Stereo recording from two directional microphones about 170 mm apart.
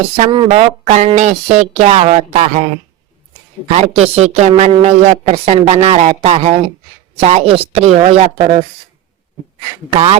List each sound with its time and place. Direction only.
0.5 s speech: 40° right (ahead or behind)
3.8 s speech: 40° right (ahead or behind)
9.9 s speech: 35° right (ahead or behind)